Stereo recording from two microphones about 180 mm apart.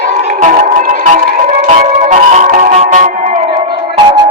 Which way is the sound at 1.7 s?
40° right (ahead or behind).